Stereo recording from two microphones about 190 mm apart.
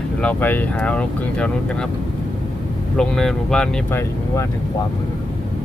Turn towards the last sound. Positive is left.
turn(degrees=15)  # may be behind; listen again after turning